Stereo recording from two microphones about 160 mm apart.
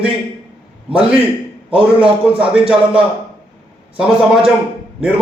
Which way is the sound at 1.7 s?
35° right (ahead or behind).